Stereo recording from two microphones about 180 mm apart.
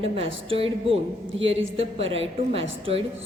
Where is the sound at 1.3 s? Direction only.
90° right.